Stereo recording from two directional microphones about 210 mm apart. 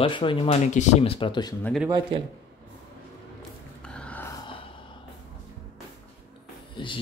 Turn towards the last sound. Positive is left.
turn(degrees=25)  # may be behind; listen again after turning